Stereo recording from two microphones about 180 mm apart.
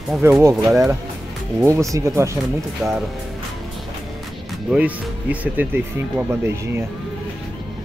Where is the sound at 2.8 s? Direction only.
Centre (ahead or behind).